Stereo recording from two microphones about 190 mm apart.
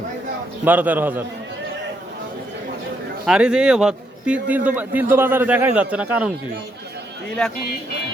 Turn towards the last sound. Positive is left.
turn(degrees=5)  # may be behind; listen again after turning